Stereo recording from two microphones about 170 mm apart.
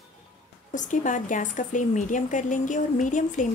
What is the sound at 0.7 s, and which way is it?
A woman's voice, 50° left (ahead or behind).